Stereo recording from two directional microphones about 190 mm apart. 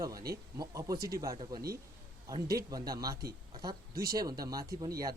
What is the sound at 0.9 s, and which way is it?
Speech, 55° right (ahead or behind).